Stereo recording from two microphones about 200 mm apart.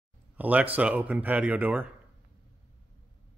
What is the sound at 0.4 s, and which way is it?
Speech, 10° right (ahead or behind).